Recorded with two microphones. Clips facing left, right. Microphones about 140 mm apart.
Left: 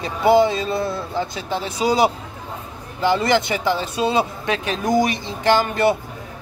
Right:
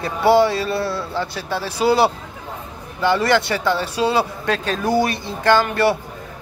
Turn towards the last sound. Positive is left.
turn(degrees=20)  # may be behind; listen again after turning